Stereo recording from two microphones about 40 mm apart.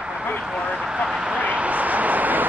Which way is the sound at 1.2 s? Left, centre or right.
Right.